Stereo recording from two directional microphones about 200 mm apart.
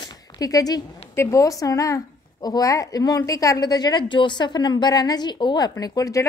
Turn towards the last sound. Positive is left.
turn(degrees=20)  # may be behind; listen again after turning